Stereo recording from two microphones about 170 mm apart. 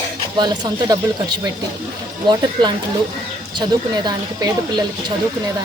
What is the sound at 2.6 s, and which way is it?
Speech, 25° right (ahead or behind).